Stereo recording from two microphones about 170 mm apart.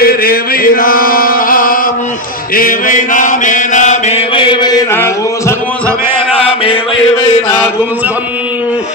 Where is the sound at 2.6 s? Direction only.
50° left (ahead or behind).